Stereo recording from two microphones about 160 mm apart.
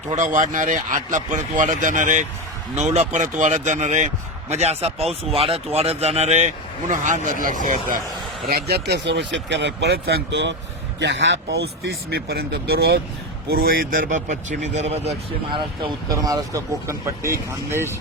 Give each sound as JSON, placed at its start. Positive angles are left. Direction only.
{"t": 0.1, "sound": "a man's voice", "side_deg": -50}
{"t": 8.4, "sound": "speech", "side_deg": -75}
{"t": 13.5, "sound": "speech", "side_deg": -70}
{"t": 15.8, "sound": "speech", "side_deg": -25}